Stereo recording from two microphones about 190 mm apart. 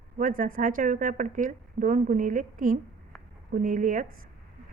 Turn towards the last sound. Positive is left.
turn(degrees=-45)  # may be behind; listen again after turning